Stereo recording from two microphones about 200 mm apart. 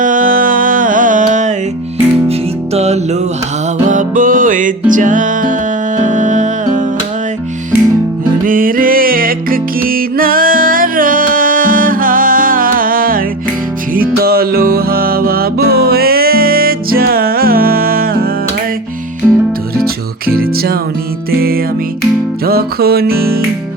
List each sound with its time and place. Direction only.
0.0 s music: 40° right (ahead or behind)
2.7 s music: 35° right (ahead or behind)
8.4 s music: 45° right (ahead or behind)
19.2 s music: centre (ahead or behind)
19.8 s music: 50° right (ahead or behind)
22.4 s music: 50° right (ahead or behind)